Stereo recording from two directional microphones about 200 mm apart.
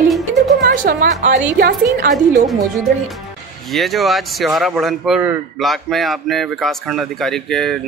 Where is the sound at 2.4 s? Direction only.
Centre (ahead or behind).